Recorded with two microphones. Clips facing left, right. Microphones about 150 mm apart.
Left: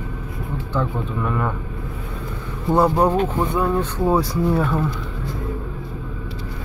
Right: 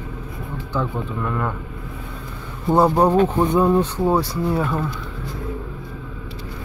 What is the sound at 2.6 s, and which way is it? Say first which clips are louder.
Speech: right 1 dB; 10° right (ahead or behind).